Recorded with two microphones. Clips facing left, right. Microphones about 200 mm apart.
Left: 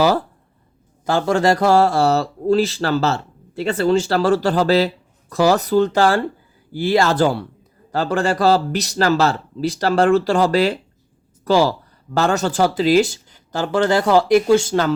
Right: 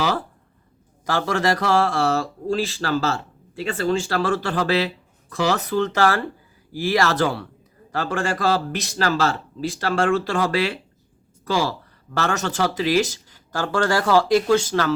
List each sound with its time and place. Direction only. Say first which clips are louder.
1.0 s speech: left 5 dB; 30° left (ahead or behind)
12.2 s speech: left 5 dB; 30° left (ahead or behind)